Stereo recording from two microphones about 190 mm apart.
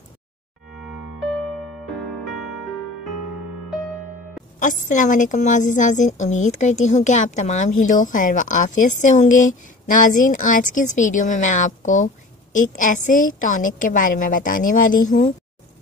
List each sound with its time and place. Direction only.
0.7 s music: centre (ahead or behind)
4.6 s a woman's voice: 40° left (ahead or behind)